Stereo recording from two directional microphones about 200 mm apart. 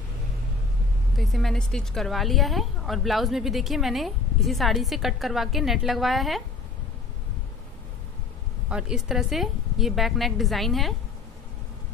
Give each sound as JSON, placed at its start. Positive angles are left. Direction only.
{"t": 1.1, "sound": "a woman's voice", "side_deg": 0}
{"t": 8.6, "sound": "a woman's voice", "side_deg": -5}